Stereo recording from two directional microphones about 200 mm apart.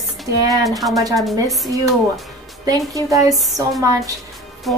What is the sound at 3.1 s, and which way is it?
Speech, 15° right (ahead or behind).